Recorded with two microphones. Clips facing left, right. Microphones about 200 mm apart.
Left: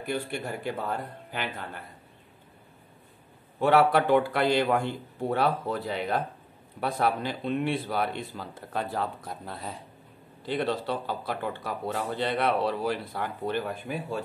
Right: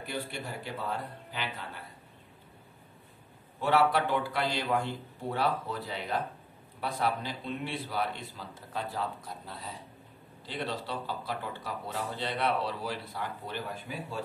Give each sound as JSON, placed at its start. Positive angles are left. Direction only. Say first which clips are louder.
{"t": 0.0, "sound": "speech", "louder": "left 6 dB", "side_deg": 50}
{"t": 3.6, "sound": "speech", "louder": "left 5 dB", "side_deg": 55}